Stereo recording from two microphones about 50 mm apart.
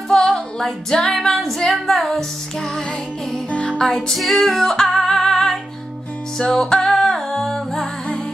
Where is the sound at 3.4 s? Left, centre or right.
Centre.